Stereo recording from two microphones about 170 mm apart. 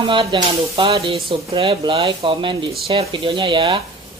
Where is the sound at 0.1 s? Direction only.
30° right (ahead or behind).